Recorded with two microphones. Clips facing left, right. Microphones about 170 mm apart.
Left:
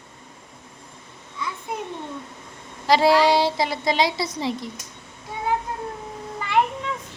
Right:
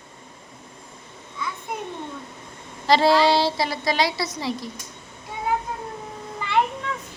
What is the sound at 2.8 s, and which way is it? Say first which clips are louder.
A woman's voice: even; 10° left (ahead or behind).